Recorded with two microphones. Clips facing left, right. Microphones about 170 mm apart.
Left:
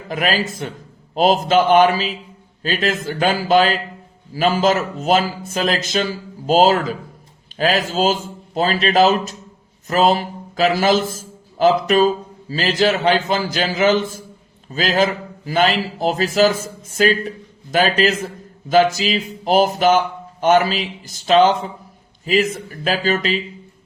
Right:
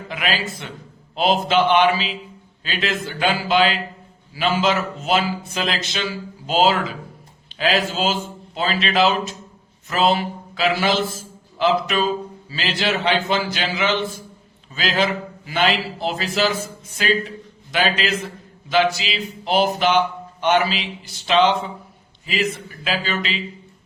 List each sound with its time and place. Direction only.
0.1 s a man's voice: 45° left (ahead or behind)